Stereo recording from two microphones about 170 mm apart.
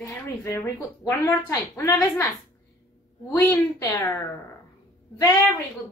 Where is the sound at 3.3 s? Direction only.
10° left (ahead or behind).